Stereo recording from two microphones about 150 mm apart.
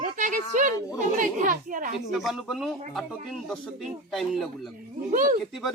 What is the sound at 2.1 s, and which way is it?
Speech, centre (ahead or behind).